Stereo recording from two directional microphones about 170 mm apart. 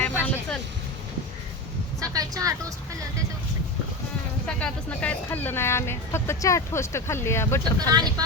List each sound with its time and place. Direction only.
0.0 s vehicle: 10° left (ahead or behind)
2.0 s speech: 20° right (ahead or behind)
4.4 s speech: 5° left (ahead or behind)
7.8 s speech: 25° right (ahead or behind)